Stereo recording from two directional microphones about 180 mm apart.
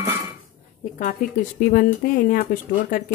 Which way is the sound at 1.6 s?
50° left (ahead or behind).